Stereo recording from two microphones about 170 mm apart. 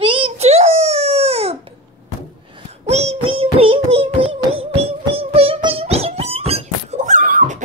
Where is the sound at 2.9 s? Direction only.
40° right (ahead or behind).